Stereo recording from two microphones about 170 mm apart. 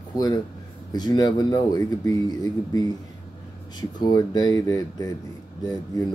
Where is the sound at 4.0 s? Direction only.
25° left (ahead or behind).